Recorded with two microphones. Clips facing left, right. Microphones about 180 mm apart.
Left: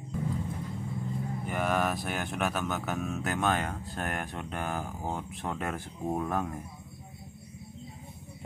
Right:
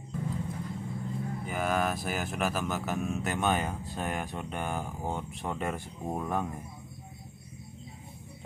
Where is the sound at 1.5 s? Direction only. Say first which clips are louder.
Left 1 dB; centre (ahead or behind).